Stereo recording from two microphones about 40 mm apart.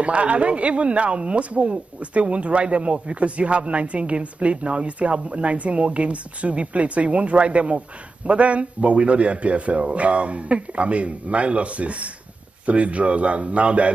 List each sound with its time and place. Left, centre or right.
0.0 s speech: right